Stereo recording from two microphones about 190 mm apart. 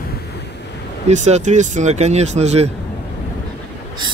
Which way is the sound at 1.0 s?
35° right (ahead or behind).